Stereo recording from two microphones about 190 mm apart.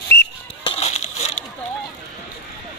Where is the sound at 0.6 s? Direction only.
30° left (ahead or behind).